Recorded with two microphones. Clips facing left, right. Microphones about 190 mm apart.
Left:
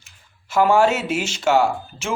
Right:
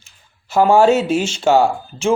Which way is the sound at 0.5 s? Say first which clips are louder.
Right 4 dB; 30° right (ahead or behind).